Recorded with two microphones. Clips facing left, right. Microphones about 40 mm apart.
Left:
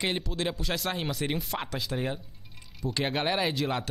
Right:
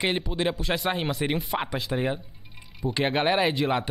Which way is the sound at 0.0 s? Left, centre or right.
Centre.